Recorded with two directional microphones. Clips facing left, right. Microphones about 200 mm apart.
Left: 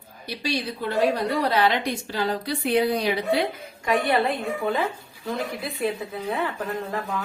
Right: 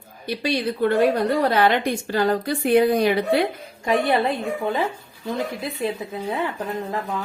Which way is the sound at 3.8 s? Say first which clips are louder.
Right 2 dB; 20° right (ahead or behind).